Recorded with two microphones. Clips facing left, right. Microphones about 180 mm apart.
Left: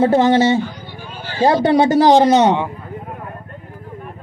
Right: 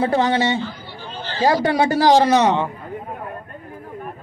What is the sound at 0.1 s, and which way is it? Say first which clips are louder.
Speech: left 5 dB; 35° left (ahead or behind).